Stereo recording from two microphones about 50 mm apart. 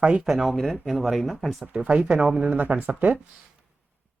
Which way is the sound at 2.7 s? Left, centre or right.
Right.